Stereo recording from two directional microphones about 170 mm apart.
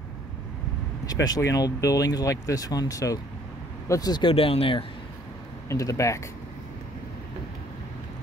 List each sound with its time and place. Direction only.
1.2 s speech: 20° left (ahead or behind)
5.7 s speech: 20° left (ahead or behind)